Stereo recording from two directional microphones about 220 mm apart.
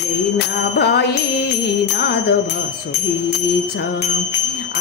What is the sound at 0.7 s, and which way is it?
Music, 50° left (ahead or behind).